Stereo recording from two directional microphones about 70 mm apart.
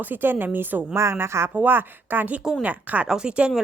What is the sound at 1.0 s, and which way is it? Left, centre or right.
Speech, right.